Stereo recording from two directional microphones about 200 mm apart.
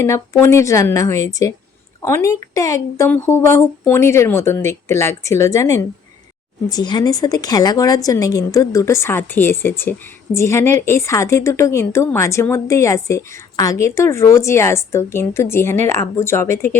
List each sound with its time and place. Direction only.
0.4 s a woman's voice: 15° left (ahead or behind)